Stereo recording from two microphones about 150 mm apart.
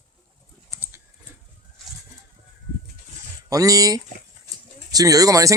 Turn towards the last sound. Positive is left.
turn(degrees=-20)  # may be behind; listen again after turning